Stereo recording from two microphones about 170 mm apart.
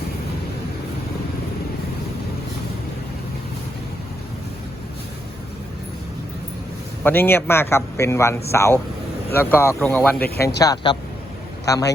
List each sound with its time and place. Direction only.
7.0 s a man's voice: 10° left (ahead or behind)
10.2 s speech: 65° left (ahead or behind)
10.6 s speech: 20° left (ahead or behind)